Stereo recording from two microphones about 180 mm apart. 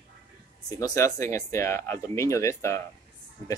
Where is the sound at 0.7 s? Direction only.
20° left (ahead or behind).